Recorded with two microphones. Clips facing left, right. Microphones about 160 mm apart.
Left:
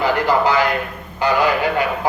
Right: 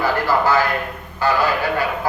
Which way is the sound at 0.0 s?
20° left (ahead or behind).